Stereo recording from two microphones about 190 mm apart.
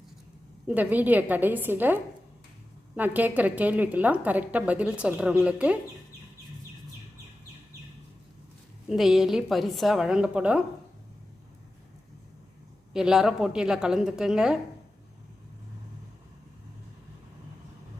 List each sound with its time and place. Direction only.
0.7 s a woman's voice: 10° right (ahead or behind)
8.9 s a woman's voice: centre (ahead or behind)
12.9 s a woman's voice: 5° right (ahead or behind)